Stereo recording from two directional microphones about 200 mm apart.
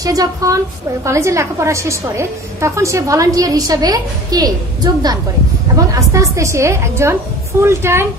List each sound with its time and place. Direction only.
0.0 s a woman's voice: 20° right (ahead or behind)